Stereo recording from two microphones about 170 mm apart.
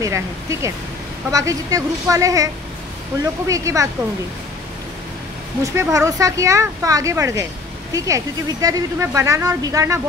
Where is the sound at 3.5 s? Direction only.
20° right (ahead or behind).